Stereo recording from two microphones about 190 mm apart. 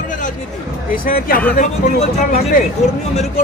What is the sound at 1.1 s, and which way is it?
Speech, 50° left (ahead or behind).